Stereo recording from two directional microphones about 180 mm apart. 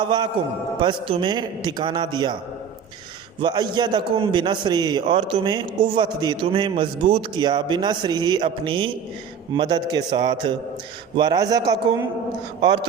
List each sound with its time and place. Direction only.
0.0 s a man's voice: 25° right (ahead or behind)
3.4 s a man's voice: 25° right (ahead or behind)